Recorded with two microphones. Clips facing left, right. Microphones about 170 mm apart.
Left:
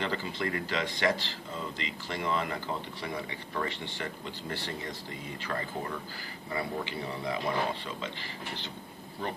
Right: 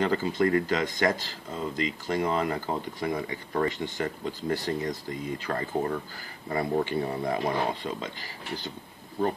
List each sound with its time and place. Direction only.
0.0 s speech: 45° right (ahead or behind)